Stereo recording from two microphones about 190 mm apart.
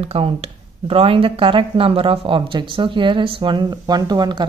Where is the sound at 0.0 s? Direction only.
30° right (ahead or behind).